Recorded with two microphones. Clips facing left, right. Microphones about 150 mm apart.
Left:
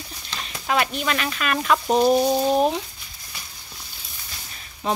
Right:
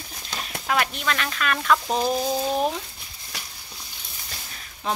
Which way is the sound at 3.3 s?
80° right.